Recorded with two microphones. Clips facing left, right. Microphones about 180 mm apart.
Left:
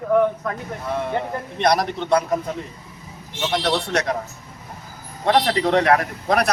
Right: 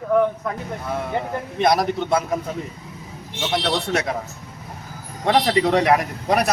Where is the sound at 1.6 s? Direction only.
Centre (ahead or behind).